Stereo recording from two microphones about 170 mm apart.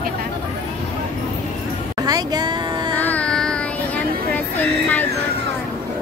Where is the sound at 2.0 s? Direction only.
25° right (ahead or behind).